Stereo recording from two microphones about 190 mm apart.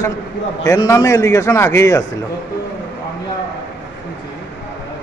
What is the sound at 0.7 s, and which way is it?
A man's voice, 15° left (ahead or behind).